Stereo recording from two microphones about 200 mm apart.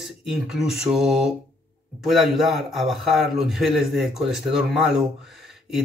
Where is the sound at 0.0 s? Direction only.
Centre (ahead or behind).